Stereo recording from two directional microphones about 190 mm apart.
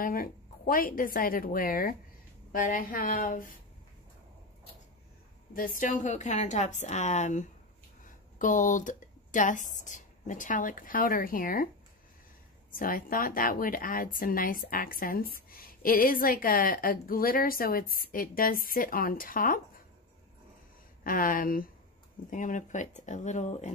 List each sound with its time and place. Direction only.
0.0 s speech: 50° left (ahead or behind)
5.5 s a woman's voice: 45° left (ahead or behind)
12.7 s speech: 45° left (ahead or behind)
21.0 s a woman's voice: 45° left (ahead or behind)